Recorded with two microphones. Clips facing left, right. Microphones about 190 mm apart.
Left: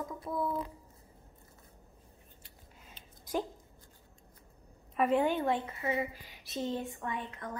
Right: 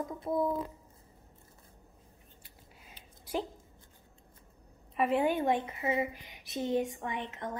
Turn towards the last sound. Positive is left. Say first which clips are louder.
# right 2 dB
turn(degrees=-20)  # may be behind; listen again after turning